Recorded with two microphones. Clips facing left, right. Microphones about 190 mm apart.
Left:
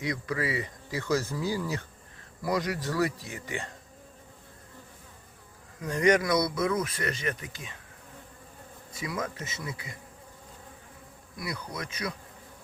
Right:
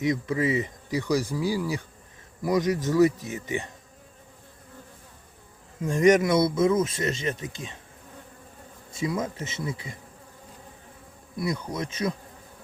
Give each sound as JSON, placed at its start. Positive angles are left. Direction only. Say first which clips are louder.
{"t": 0.0, "sound": "speech", "louder": "right 6 dB", "side_deg": -20}
{"t": 5.8, "sound": "speech", "louder": "right 5 dB", "side_deg": -20}
{"t": 8.9, "sound": "speech", "louder": "right 6 dB", "side_deg": -25}
{"t": 11.3, "sound": "speech", "louder": "right 7 dB", "side_deg": -25}